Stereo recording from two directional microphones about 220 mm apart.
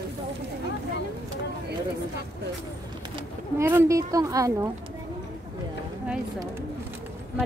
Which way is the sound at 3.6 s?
10° right (ahead or behind).